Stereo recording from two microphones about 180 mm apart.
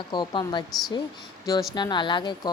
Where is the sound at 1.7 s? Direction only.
25° left (ahead or behind).